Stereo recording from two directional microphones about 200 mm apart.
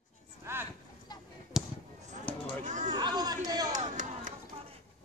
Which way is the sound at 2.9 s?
20° right (ahead or behind).